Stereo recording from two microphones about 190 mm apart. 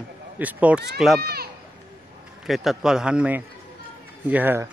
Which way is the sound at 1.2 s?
55° right (ahead or behind).